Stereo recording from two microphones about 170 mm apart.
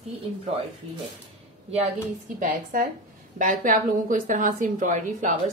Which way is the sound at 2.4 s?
50° right (ahead or behind).